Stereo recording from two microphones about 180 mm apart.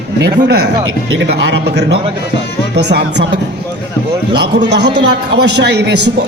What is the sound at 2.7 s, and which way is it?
Speech, 65° right (ahead or behind).